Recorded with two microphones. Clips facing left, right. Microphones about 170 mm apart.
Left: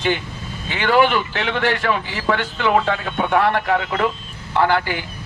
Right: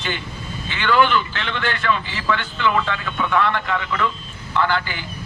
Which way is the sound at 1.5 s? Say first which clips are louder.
Left 2 dB; 55° left (ahead or behind).